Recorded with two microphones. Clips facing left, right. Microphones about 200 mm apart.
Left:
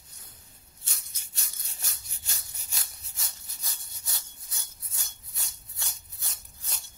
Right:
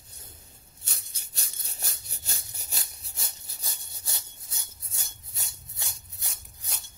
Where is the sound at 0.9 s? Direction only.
35° right (ahead or behind).